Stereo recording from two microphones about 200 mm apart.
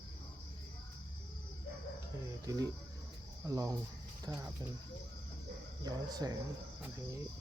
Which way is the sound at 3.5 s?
15° right (ahead or behind).